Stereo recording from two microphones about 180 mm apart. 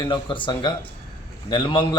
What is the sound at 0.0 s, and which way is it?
A man's voice, 30° left (ahead or behind).